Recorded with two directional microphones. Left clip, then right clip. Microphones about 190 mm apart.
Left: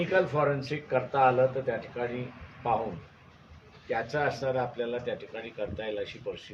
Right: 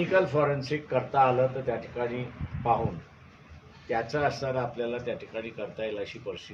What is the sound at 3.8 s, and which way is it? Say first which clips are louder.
A man's voice: right 1 dB; 15° right (ahead or behind).